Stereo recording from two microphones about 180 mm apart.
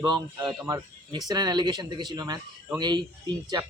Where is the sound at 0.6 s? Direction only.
20° right (ahead or behind).